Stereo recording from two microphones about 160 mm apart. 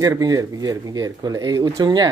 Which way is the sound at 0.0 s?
20° right (ahead or behind).